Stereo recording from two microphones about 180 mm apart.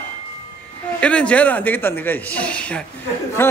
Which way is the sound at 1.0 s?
5° left (ahead or behind).